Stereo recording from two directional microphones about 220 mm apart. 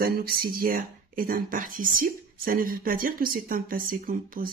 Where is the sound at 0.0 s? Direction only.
45° right (ahead or behind).